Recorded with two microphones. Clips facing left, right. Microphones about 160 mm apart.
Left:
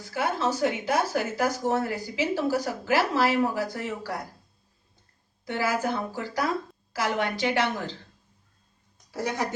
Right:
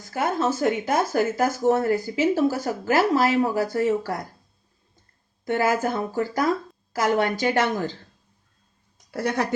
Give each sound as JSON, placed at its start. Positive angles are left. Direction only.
{"t": 0.1, "sound": "speech", "side_deg": -45}
{"t": 5.5, "sound": "speech", "side_deg": -50}
{"t": 9.1, "sound": "speech", "side_deg": -65}